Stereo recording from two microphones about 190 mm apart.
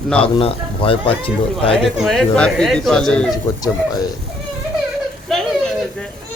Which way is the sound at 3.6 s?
20° left (ahead or behind).